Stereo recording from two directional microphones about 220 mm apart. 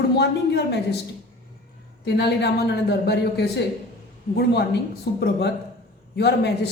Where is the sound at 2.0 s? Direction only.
50° left (ahead or behind).